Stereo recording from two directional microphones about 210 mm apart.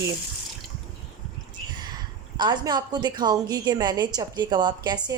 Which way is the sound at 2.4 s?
20° right (ahead or behind).